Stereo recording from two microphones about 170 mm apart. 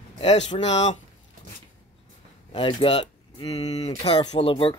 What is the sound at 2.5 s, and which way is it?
Speech, 30° left (ahead or behind).